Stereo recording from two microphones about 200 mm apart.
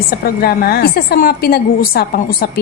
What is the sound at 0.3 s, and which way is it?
A woman's voice, 50° left (ahead or behind).